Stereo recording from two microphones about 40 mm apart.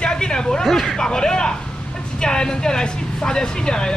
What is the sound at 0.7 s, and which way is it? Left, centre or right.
Speech, centre.